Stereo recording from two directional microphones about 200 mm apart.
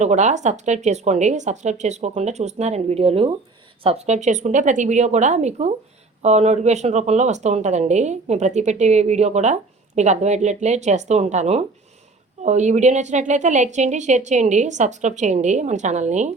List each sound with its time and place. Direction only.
0.0 s speech: 35° right (ahead or behind)